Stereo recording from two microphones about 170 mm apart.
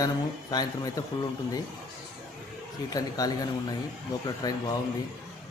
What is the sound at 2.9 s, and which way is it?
A man's voice, 20° left (ahead or behind).